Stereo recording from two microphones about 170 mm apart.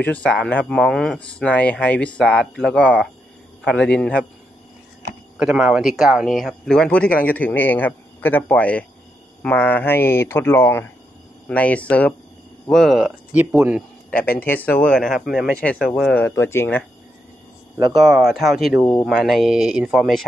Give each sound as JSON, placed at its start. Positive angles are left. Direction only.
{"t": 0.0, "sound": "speech", "side_deg": 10}
{"t": 5.4, "sound": "speech", "side_deg": -5}
{"t": 14.4, "sound": "speech", "side_deg": 10}
{"t": 15.0, "sound": "speech", "side_deg": 0}
{"t": 15.5, "sound": "speech", "side_deg": 5}
{"t": 17.9, "sound": "speech", "side_deg": 0}